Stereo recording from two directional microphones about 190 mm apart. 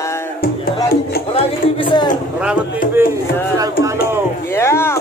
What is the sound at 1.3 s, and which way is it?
Speech, 25° left (ahead or behind).